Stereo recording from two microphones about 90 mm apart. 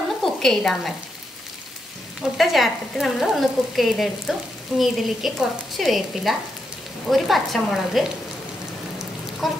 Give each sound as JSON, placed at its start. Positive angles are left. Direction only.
{"t": 0.2, "sound": "speech", "side_deg": 5}
{"t": 2.3, "sound": "frying", "side_deg": 0}
{"t": 9.4, "sound": "frying", "side_deg": 0}